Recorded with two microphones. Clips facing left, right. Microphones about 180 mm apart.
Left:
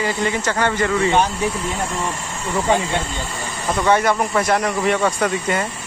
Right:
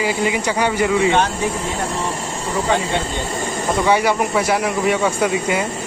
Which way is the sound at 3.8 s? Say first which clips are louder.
Even; 10° right (ahead or behind).